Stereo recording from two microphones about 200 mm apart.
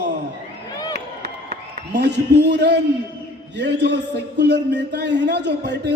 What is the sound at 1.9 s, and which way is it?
A man's voice, 60° right (ahead or behind).